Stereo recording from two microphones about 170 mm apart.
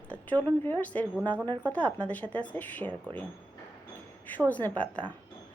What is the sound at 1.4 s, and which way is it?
Speech, 25° right (ahead or behind).